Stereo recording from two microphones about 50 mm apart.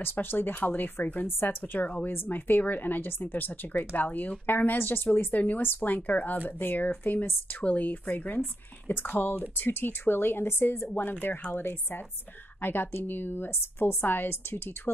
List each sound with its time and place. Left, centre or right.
0.0 s speech: left
11.0 s speech: left